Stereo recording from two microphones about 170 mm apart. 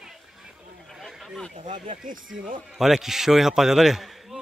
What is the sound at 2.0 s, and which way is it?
Speech, 50° right (ahead or behind).